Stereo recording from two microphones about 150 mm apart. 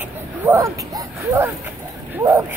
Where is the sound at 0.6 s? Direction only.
20° right (ahead or behind).